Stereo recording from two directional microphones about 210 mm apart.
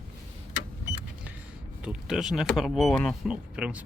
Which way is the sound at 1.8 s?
5° right (ahead or behind).